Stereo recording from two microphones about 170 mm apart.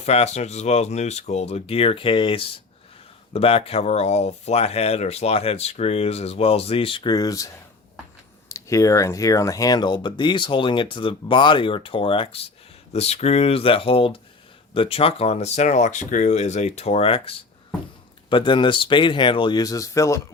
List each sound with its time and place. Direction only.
0.0 s speech: 40° left (ahead or behind); by 20.2 s 20° left (ahead or behind)